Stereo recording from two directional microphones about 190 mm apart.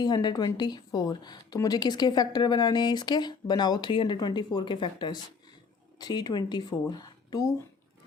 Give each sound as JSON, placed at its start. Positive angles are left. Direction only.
{"t": 0.0, "sound": "speech", "side_deg": 20}